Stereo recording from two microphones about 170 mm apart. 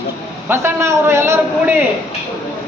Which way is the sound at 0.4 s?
15° right (ahead or behind).